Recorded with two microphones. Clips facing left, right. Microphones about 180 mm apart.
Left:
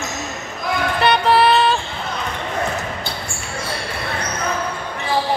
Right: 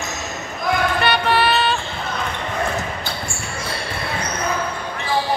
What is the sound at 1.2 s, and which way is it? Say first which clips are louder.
Music: left 4 dB; 30° left (ahead or behind).